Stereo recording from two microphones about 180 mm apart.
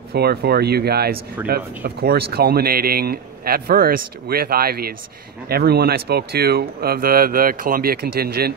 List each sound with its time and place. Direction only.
0.1 s speech: 60° right (ahead or behind)